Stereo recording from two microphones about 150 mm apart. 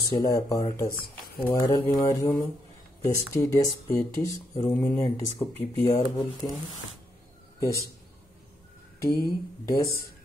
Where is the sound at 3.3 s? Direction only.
20° left (ahead or behind).